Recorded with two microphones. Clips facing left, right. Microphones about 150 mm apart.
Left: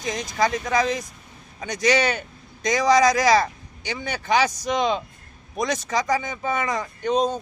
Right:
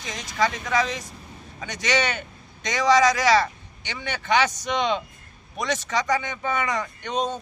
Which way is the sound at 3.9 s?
40° left (ahead or behind).